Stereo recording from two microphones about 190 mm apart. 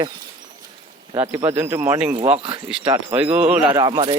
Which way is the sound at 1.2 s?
15° right (ahead or behind).